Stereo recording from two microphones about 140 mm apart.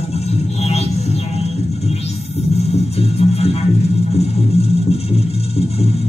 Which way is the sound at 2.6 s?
45° left (ahead or behind).